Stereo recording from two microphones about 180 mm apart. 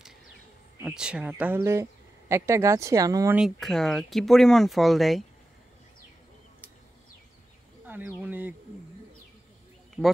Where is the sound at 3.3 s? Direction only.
Centre (ahead or behind).